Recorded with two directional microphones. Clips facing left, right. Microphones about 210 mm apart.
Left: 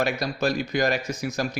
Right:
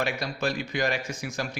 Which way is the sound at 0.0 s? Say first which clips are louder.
Left 4 dB; 40° left (ahead or behind).